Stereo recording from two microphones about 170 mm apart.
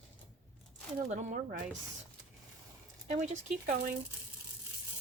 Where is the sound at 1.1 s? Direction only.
45° right (ahead or behind).